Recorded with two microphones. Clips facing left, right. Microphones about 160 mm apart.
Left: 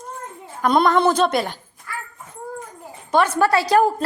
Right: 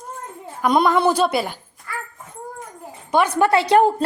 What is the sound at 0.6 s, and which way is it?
A woman's voice, 10° right (ahead or behind).